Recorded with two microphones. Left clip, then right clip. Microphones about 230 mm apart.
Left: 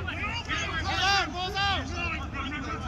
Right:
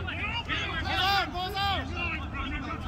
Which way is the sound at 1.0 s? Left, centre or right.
Right.